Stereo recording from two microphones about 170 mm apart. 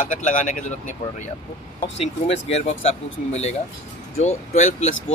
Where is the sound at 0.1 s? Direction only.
50° left (ahead or behind).